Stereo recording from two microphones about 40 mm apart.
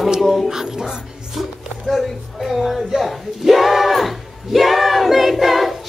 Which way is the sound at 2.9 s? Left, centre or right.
Centre.